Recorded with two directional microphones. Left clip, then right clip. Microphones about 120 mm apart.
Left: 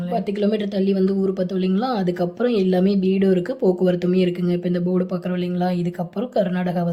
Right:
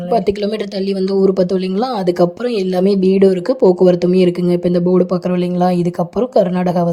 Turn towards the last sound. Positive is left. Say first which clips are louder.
# right 8 dB
turn(degrees=-55)  # may be behind; listen again after turning